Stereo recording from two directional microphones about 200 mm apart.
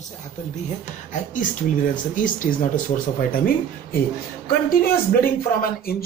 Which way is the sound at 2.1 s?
40° left (ahead or behind).